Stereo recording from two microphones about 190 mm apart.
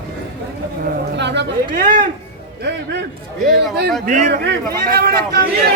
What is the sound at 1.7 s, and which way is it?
Speech, 45° right (ahead or behind).